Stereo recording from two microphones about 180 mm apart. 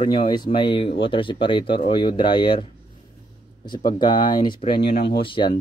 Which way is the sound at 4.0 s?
25° left (ahead or behind).